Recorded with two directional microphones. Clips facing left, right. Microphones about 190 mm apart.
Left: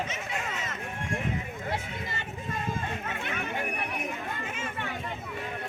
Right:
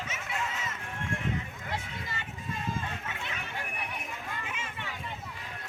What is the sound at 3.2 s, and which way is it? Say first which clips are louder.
Chatter: left 7 dB; 55° left (ahead or behind).